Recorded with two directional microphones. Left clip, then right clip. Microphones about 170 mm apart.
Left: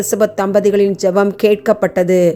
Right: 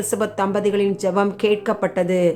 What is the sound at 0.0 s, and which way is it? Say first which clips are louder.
A woman's voice: left 7 dB; 30° left (ahead or behind).